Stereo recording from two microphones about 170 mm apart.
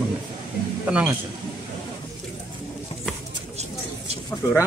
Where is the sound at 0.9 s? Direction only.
10° right (ahead or behind).